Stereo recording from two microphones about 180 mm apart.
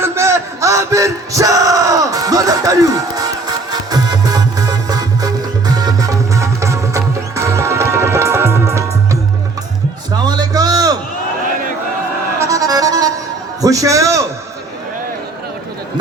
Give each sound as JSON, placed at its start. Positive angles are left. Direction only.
{"t": 0.0, "sound": "male singing", "side_deg": -15}
{"t": 10.2, "sound": "a sound", "side_deg": -20}
{"t": 12.4, "sound": "music", "side_deg": -20}